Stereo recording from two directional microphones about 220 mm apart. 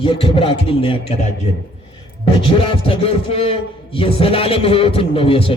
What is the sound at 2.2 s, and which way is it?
A man's voice, 25° left (ahead or behind).